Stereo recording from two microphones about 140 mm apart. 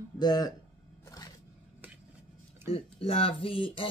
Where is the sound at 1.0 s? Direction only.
25° left (ahead or behind).